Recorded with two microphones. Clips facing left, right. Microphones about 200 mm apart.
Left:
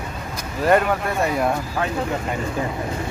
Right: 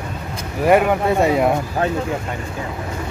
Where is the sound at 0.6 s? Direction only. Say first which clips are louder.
Right 3 dB; 15° right (ahead or behind).